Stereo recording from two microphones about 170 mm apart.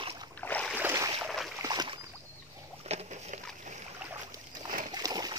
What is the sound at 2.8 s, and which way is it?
Boat, 40° right (ahead or behind).